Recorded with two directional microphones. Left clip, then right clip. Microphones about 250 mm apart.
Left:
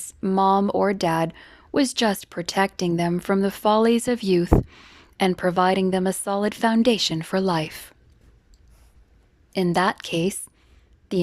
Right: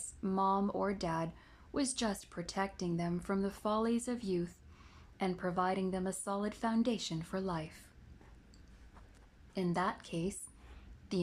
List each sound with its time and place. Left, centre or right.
0.0 s speech: left
9.5 s a woman's voice: left